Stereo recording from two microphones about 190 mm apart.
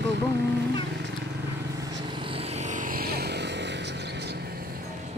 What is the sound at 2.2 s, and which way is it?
Vehicle, 30° right (ahead or behind).